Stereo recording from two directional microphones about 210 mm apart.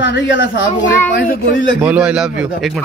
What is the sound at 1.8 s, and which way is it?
A man's voice, 5° right (ahead or behind).